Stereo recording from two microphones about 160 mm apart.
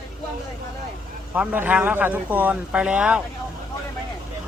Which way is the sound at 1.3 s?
10° right (ahead or behind).